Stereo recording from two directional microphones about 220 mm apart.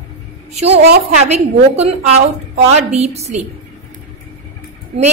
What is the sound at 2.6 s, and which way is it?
Speech, 30° right (ahead or behind).